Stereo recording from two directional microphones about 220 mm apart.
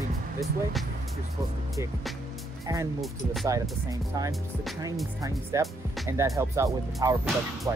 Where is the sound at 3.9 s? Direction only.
15° right (ahead or behind).